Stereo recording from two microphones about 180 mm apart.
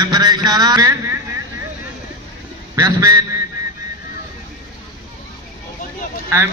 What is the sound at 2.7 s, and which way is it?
Speech, 20° right (ahead or behind).